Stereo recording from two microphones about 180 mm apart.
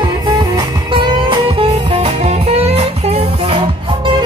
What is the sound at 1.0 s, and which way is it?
Music, 30° right (ahead or behind).